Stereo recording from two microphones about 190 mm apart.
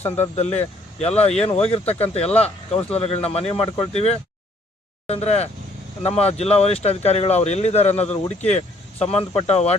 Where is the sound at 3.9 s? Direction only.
35° left (ahead or behind).